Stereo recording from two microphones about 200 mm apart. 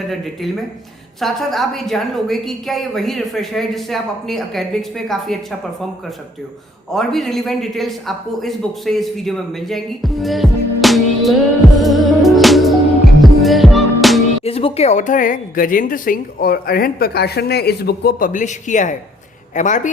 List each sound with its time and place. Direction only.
1.2 s speech: centre (ahead or behind)
6.9 s speech: centre (ahead or behind)
11.8 s music: centre (ahead or behind)
14.4 s a woman's voice: 30° left (ahead or behind)